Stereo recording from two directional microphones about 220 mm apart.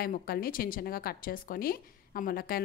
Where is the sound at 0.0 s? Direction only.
40° left (ahead or behind).